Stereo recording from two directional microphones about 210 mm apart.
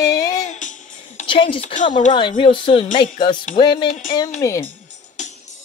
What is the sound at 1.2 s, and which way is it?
A woman's voice, 25° left (ahead or behind).